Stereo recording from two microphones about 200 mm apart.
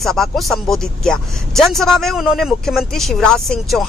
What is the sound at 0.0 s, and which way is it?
Speech, centre (ahead or behind).